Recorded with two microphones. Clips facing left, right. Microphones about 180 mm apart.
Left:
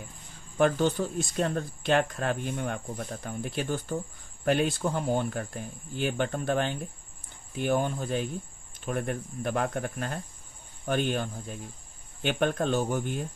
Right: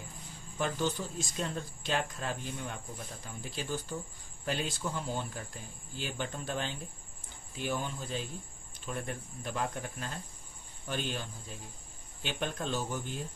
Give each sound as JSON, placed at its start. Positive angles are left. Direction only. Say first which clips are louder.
{"t": 0.6, "sound": "speech", "louder": "left 9 dB", "side_deg": 60}